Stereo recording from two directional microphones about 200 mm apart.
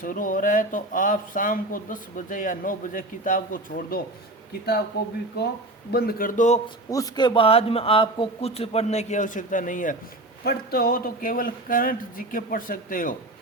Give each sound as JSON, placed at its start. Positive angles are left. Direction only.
{"t": 0.0, "sound": "speech", "side_deg": 40}
{"t": 5.9, "sound": "speech", "side_deg": 50}
{"t": 6.9, "sound": "a man's voice", "side_deg": 20}